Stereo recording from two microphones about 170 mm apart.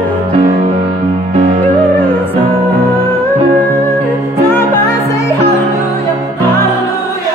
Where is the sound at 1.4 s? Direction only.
45° right (ahead or behind).